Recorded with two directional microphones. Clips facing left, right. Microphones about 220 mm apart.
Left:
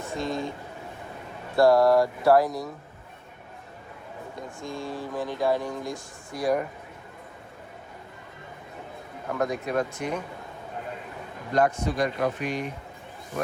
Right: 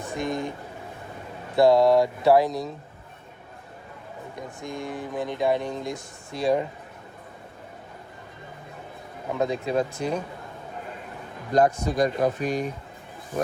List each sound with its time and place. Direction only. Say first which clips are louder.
0.0 s speech: right 1 dB; 15° right (ahead or behind)
1.5 s speech: right 1 dB; 20° right (ahead or behind)
4.4 s speech: right 1 dB; 20° right (ahead or behind)
9.3 s speech: right 2 dB; 25° right (ahead or behind)
11.5 s speech: right 3 dB; 40° right (ahead or behind)